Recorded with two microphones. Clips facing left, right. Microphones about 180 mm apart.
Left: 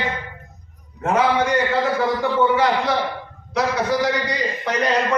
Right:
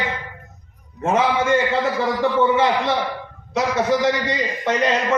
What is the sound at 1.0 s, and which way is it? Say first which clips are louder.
A man's voice: even; 25° right (ahead or behind).